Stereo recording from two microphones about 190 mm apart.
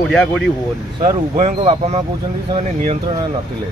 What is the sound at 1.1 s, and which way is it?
Speech, 30° right (ahead or behind).